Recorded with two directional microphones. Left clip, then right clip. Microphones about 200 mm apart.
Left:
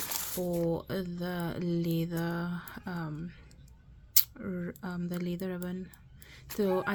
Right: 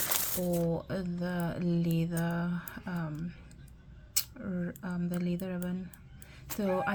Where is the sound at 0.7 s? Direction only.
40° left (ahead or behind).